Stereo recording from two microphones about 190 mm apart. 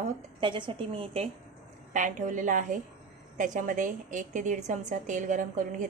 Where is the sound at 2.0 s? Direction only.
40° right (ahead or behind).